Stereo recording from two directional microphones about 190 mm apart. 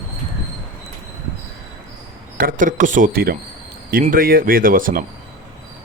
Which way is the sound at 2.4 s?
45° right (ahead or behind).